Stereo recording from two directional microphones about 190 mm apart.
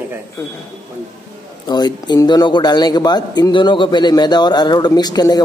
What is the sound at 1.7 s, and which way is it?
A man's voice, 20° left (ahead or behind).